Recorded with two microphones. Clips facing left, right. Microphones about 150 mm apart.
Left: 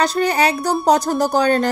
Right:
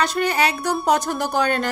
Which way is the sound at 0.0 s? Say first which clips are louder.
Left 3 dB; 40° left (ahead or behind).